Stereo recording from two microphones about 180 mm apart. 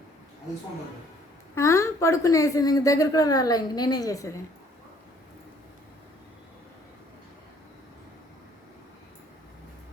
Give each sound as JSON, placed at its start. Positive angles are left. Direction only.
{"t": 1.5, "sound": "a woman's voice", "side_deg": 15}